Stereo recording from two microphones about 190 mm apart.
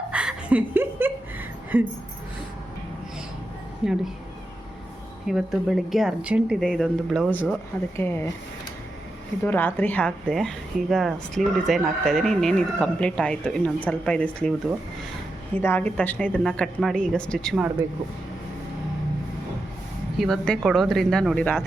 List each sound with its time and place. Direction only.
0.1 s a sound: 5° right (ahead or behind)
3.8 s speech: 5° right (ahead or behind)
5.3 s a woman's voice: centre (ahead or behind)
9.4 s speech: 10° left (ahead or behind)
15.6 s a woman's voice: 10° left (ahead or behind)
20.1 s speech: centre (ahead or behind)